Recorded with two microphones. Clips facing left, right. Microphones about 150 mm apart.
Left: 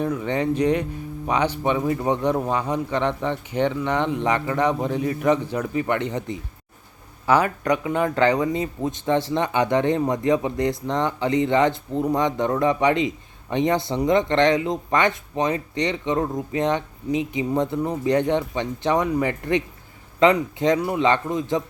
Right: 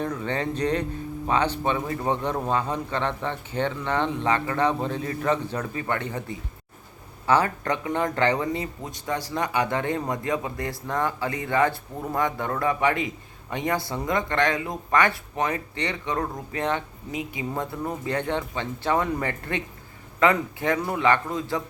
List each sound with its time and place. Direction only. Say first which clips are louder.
0.0 s a man's voice: left 4 dB; 15° left (ahead or behind)
7.3 s speech: left 3 dB; 15° left (ahead or behind)